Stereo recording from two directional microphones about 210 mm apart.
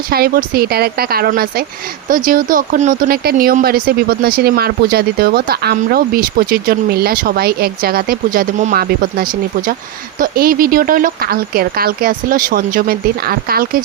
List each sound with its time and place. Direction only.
0.1 s speech: 45° right (ahead or behind)